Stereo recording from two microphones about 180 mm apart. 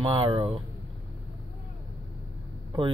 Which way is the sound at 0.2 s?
30° right (ahead or behind).